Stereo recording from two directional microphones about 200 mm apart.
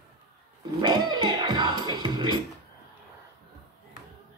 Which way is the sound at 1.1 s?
20° right (ahead or behind).